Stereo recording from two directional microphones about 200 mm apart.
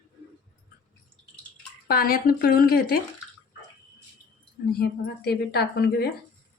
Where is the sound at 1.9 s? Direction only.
45° left (ahead or behind).